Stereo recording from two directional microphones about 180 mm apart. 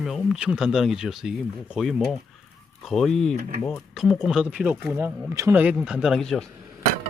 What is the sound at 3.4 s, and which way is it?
Speech, 40° right (ahead or behind).